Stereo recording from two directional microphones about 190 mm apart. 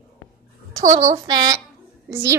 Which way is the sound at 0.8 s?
40° right (ahead or behind).